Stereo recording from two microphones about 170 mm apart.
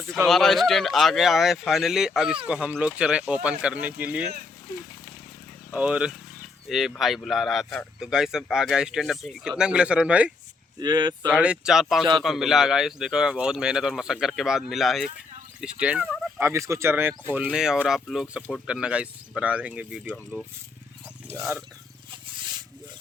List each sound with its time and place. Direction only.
0.3 s speech: centre (ahead or behind)
5.7 s speech: 5° right (ahead or behind)
10.8 s speech: 25° right (ahead or behind)
11.3 s speech: 5° right (ahead or behind)